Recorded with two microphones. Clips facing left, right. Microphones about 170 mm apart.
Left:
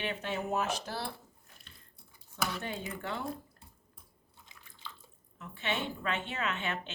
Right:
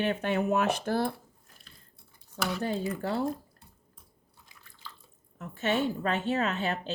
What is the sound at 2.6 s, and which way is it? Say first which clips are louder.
Speech: right 8 dB; 35° right (ahead or behind).